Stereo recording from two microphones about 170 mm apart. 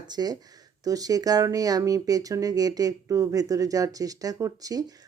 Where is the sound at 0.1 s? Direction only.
25° right (ahead or behind).